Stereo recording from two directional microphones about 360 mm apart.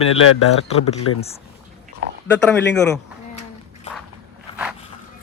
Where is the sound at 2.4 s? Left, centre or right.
Centre.